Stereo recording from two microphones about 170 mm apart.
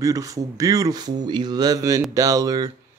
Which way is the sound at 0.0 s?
20° right (ahead or behind).